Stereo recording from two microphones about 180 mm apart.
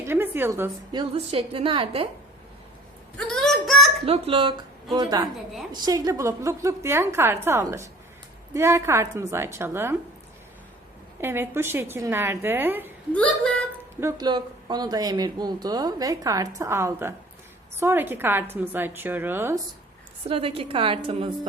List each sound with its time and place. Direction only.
0.0 s a woman's voice: 10° right (ahead or behind)
0.9 s a woman's voice: 30° right (ahead or behind)
3.2 s a sound: 5° left (ahead or behind)
4.0 s a woman's voice: 30° right (ahead or behind); by 9.9 s 15° right (ahead or behind)
11.2 s a woman's voice: 15° right (ahead or behind)
13.1 s speech: 5° left (ahead or behind)
14.0 s a woman's voice: 25° right (ahead or behind)
20.2 s a woman's voice: 30° right (ahead or behind)